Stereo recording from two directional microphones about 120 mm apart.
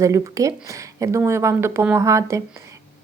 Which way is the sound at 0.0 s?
25° right (ahead or behind).